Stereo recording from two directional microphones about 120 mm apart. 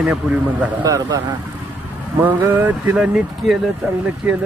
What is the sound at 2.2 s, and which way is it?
Speech, 15° right (ahead or behind).